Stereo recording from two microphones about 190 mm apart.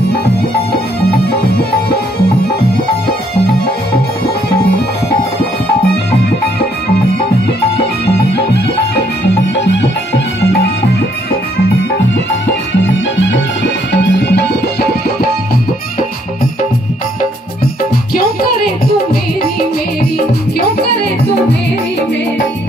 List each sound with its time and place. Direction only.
1.4 s music: 55° left (ahead or behind)
9.7 s music: 70° left (ahead or behind)
12.8 s music: 75° left (ahead or behind)